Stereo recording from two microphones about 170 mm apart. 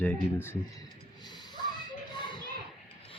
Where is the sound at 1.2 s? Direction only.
25° left (ahead or behind).